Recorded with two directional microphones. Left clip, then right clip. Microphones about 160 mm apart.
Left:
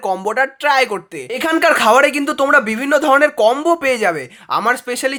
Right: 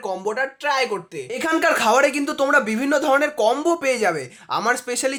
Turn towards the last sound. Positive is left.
turn(degrees=25)  # may be behind; listen again after turning